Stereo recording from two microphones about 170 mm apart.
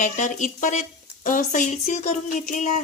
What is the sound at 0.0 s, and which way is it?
Speech, 45° left (ahead or behind).